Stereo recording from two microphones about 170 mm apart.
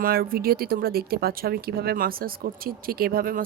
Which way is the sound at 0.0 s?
60° right (ahead or behind).